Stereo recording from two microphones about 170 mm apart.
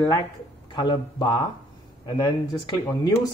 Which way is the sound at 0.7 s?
25° left (ahead or behind).